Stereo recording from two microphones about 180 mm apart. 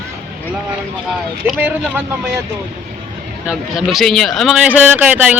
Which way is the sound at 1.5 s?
5° right (ahead or behind).